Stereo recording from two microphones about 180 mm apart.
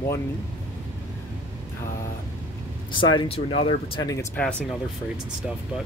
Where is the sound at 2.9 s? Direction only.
25° left (ahead or behind).